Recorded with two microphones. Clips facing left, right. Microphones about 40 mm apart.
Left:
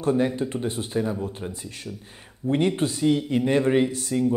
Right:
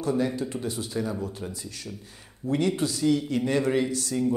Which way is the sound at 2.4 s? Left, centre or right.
Left.